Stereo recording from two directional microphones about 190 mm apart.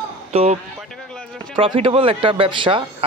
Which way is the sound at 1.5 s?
30° right (ahead or behind).